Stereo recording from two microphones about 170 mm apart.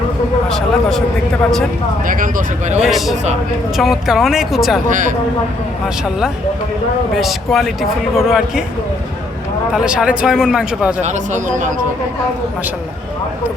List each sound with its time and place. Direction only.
0.4 s speech: 5° left (ahead or behind)
2.0 s speech: 50° right (ahead or behind)
2.8 s speech: centre (ahead or behind)
4.9 s speech: 50° right (ahead or behind)
7.2 s speech: centre (ahead or behind)
9.7 s speech: 5° right (ahead or behind)
11.0 s speech: 45° right (ahead or behind)